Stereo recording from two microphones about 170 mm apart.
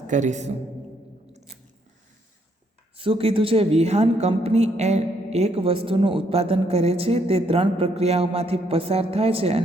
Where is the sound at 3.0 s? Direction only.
30° right (ahead or behind).